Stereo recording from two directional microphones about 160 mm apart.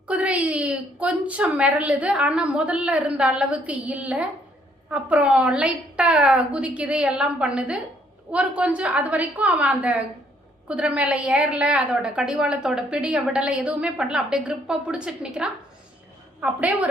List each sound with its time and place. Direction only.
0.1 s a woman's voice: 10° right (ahead or behind)